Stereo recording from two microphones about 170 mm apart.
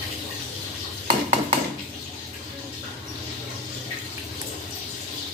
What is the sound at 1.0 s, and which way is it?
Dishes, 45° right (ahead or behind).